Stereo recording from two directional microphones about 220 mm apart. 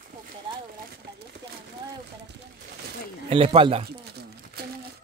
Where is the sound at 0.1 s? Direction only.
40° right (ahead or behind).